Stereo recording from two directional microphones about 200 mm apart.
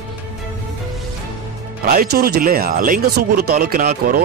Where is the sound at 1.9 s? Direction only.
50° right (ahead or behind).